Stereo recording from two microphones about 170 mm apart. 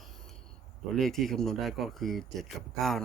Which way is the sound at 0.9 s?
Centre (ahead or behind).